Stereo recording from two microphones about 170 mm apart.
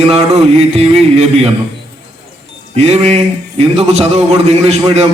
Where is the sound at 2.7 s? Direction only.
40° right (ahead or behind).